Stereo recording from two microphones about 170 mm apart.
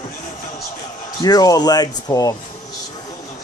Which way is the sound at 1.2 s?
20° left (ahead or behind).